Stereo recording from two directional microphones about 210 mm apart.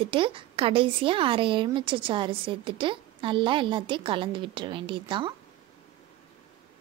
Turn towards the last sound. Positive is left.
turn(degrees=-25)  # may be behind; listen again after turning